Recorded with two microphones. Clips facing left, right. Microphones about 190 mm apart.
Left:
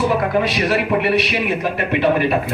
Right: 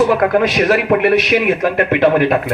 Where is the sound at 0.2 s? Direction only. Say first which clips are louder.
Right 5 dB; 50° right (ahead or behind).